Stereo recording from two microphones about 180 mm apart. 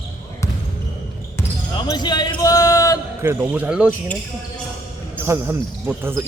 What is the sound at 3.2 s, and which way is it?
Speech, 10° right (ahead or behind).